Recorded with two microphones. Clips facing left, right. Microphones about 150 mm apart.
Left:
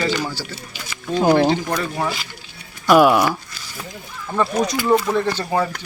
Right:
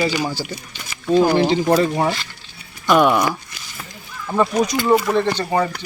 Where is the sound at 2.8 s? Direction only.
5° left (ahead or behind).